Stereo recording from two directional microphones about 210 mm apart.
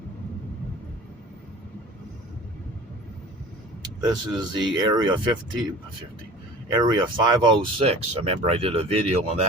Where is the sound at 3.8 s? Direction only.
20° right (ahead or behind).